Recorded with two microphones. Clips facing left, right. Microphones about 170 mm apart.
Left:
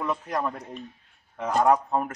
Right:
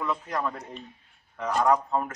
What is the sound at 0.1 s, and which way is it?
A man's voice, 25° left (ahead or behind).